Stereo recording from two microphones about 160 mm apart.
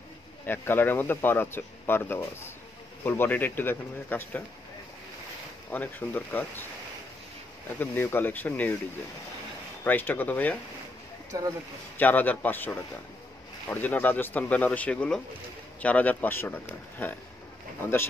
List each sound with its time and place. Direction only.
0.5 s speech: 15° left (ahead or behind)
5.7 s speech: 10° left (ahead or behind)
7.8 s speech: 15° left (ahead or behind)
9.8 s speech: 10° left (ahead or behind)
11.3 s speech: 20° right (ahead or behind)
12.0 s speech: 10° left (ahead or behind)